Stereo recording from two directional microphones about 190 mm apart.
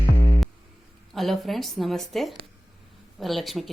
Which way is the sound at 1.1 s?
Centre (ahead or behind).